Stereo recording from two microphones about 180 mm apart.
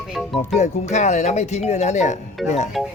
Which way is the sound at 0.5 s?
40° left (ahead or behind).